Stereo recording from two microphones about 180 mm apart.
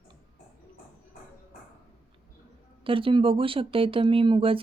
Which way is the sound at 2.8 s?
30° right (ahead or behind).